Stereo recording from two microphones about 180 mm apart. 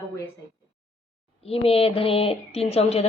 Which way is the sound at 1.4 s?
35° left (ahead or behind).